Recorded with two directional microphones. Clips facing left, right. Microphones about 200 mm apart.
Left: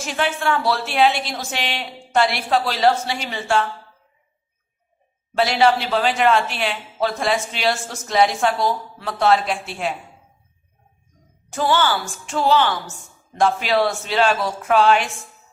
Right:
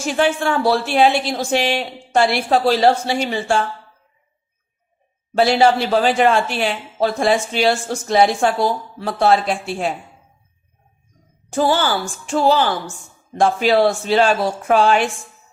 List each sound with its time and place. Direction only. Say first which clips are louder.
0.0 s speech: right 5 dB; 30° right (ahead or behind)
5.4 s speech: right 3 dB; 30° right (ahead or behind)
11.5 s speech: right 2 dB; 35° right (ahead or behind)